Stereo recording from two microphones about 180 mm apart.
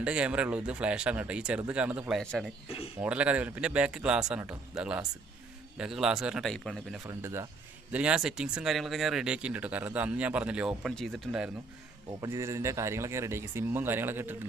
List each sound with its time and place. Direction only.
0.0 s speech: 5° right (ahead or behind)
2.6 s speech: 35° left (ahead or behind)
3.0 s speech: 5° right (ahead or behind)
7.1 s speech: 15° right (ahead or behind)
12.2 s speech: 15° right (ahead or behind)